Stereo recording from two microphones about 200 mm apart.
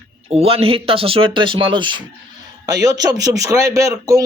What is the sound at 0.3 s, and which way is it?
Speech, 30° right (ahead or behind).